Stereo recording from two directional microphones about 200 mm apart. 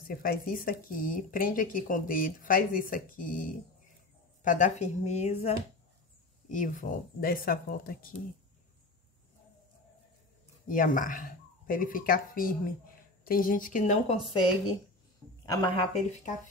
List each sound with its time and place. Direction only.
0.1 s a woman's voice: 45° left (ahead or behind)
6.5 s speech: 40° left (ahead or behind)
10.7 s a woman's voice: 40° left (ahead or behind)
15.4 s speech: 25° left (ahead or behind)